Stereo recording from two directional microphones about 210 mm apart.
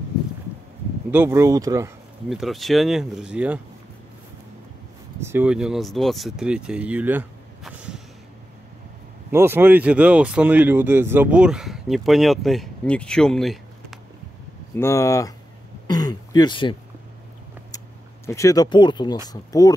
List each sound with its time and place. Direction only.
1.1 s speech: 10° right (ahead or behind)
2.2 s speech: centre (ahead or behind)
5.2 s speech: 10° right (ahead or behind)
9.3 s speech: 10° right (ahead or behind)
14.8 s speech: 15° left (ahead or behind)
15.9 s a sound: 20° left (ahead or behind)
19.2 s speech: 15° left (ahead or behind)